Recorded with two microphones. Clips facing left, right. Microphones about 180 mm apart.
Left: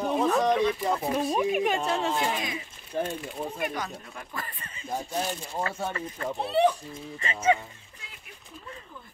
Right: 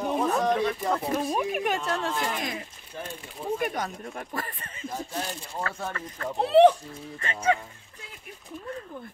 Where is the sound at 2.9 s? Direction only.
35° left (ahead or behind).